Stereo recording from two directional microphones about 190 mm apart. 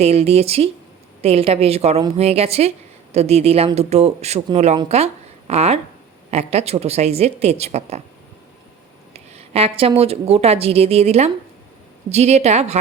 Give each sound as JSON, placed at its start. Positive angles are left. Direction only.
{"t": 0.0, "sound": "a woman's voice", "side_deg": -30}
{"t": 9.1, "sound": "a woman's voice", "side_deg": -35}